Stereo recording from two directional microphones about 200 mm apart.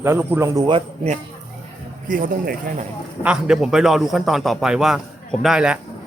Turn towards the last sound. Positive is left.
turn(degrees=-5)  # may be behind; listen again after turning